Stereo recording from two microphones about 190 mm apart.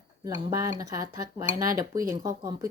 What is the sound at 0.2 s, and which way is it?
Speech, 15° right (ahead or behind).